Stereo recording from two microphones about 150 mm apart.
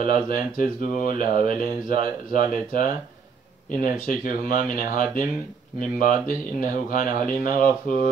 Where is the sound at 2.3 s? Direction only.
70° left (ahead or behind).